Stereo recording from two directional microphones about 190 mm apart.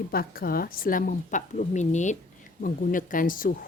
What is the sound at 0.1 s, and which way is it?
Speech, 50° left (ahead or behind).